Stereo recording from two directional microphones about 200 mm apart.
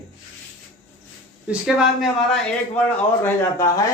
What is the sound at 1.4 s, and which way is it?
A man's voice, 5° right (ahead or behind).